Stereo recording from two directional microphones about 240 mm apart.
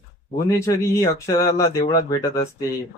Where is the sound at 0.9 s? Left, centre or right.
Centre.